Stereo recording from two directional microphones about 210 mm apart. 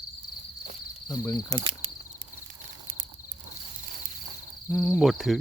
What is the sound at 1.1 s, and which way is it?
Speech, 15° left (ahead or behind).